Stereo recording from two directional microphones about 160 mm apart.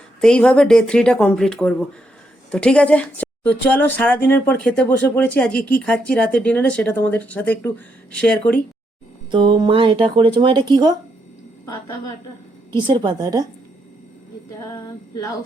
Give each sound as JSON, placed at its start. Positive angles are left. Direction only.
{"t": 0.2, "sound": "a woman's voice", "side_deg": 5}
{"t": 9.3, "sound": "speech", "side_deg": -30}
{"t": 11.6, "sound": "female singing", "side_deg": 20}
{"t": 12.7, "sound": "a woman's voice", "side_deg": -30}
{"t": 14.6, "sound": "female singing", "side_deg": 20}